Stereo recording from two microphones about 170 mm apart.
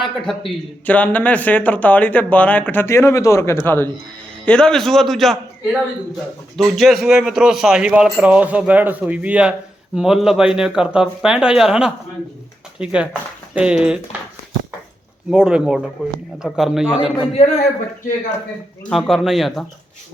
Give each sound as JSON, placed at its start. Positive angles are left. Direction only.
{"t": 0.0, "sound": "a man's voice", "side_deg": 0}
{"t": 6.6, "sound": "a man's voice", "side_deg": 0}
{"t": 15.3, "sound": "a man's voice", "side_deg": -5}
{"t": 17.2, "sound": "a man's voice", "side_deg": 40}
{"t": 18.9, "sound": "a man's voice", "side_deg": 0}